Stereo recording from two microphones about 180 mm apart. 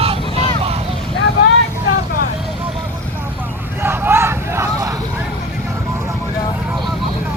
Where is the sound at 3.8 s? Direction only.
10° right (ahead or behind).